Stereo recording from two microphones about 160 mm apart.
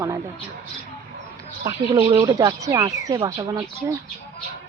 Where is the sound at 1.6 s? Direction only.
35° right (ahead or behind); by 4.0 s 15° right (ahead or behind).